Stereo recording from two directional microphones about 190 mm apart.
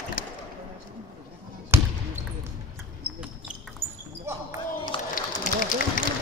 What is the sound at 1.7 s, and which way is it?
Basketball bounce, 10° right (ahead or behind).